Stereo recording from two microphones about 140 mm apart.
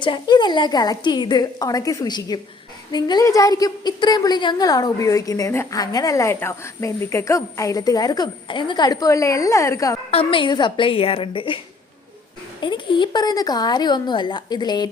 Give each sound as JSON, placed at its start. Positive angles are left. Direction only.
{"t": 0.0, "sound": "a woman's voice", "side_deg": 35}
{"t": 10.1, "sound": "a woman's voice", "side_deg": 40}